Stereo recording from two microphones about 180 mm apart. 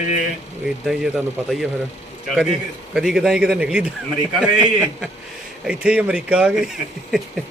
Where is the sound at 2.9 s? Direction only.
Centre (ahead or behind).